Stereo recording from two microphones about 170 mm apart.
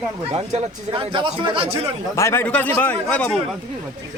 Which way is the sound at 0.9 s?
30° right (ahead or behind).